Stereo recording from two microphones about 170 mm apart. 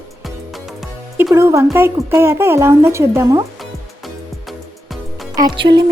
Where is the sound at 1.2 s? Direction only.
15° right (ahead or behind).